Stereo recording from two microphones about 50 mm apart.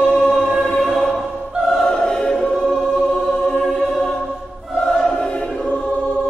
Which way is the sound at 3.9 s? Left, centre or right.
Centre.